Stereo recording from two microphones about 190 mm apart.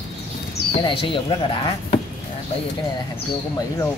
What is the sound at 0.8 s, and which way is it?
Speech, 25° left (ahead or behind).